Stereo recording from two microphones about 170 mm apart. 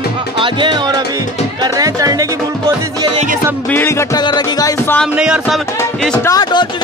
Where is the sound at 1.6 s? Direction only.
20° right (ahead or behind).